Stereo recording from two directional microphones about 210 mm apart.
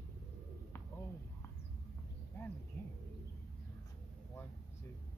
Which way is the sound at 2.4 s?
10° left (ahead or behind).